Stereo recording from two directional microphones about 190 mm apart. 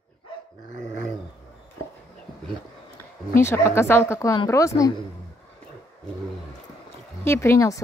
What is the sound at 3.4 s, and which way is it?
A woman's voice, 15° left (ahead or behind).